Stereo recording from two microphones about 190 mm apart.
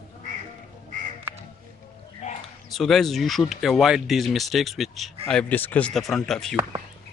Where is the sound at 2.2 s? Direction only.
35° left (ahead or behind).